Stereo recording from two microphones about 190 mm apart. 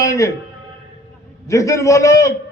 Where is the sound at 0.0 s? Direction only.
15° left (ahead or behind).